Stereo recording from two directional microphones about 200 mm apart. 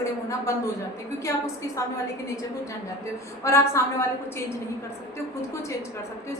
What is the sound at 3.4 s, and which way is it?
Speech, 15° left (ahead or behind).